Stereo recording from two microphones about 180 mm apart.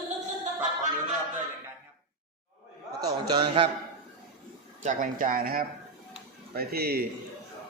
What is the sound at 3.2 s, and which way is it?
Speech, 25° right (ahead or behind).